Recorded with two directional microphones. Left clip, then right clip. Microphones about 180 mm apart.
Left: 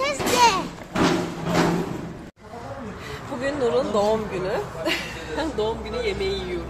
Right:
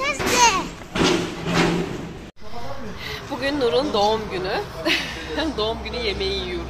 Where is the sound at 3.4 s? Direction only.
5° right (ahead or behind).